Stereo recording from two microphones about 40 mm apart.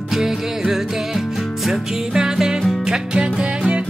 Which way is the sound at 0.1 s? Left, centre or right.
Centre.